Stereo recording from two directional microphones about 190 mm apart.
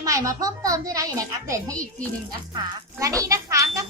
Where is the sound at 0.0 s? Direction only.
15° right (ahead or behind).